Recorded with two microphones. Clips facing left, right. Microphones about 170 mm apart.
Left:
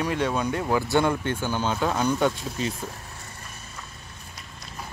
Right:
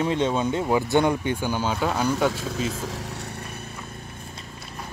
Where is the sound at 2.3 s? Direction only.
85° right; by 3.6 s 70° right (ahead or behind).